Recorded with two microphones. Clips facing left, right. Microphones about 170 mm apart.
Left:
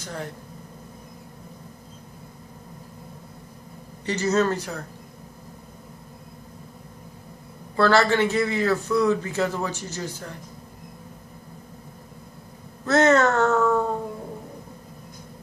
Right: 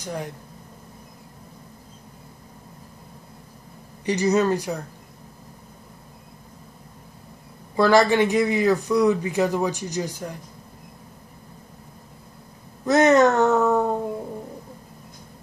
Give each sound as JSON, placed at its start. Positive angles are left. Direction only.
{"t": 0.0, "sound": "a man's voice", "side_deg": -15}
{"t": 4.0, "sound": "a man's voice", "side_deg": -15}
{"t": 7.7, "sound": "a man's voice", "side_deg": -15}
{"t": 12.8, "sound": "a man's voice", "side_deg": -15}